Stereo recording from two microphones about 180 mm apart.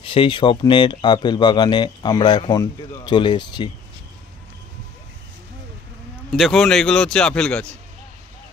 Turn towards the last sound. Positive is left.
turn(degrees=5)  # may be behind; listen again after turning